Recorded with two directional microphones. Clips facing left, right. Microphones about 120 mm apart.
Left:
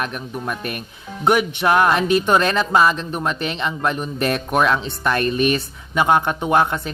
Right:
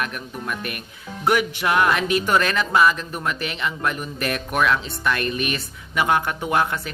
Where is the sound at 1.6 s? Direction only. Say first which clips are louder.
Left 5 dB; 35° left (ahead or behind).